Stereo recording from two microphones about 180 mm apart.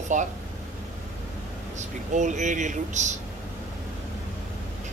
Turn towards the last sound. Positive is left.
turn(degrees=-40)  # may be behind; listen again after turning